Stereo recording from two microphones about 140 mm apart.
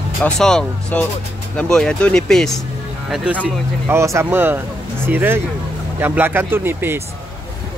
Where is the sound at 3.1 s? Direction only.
10° right (ahead or behind).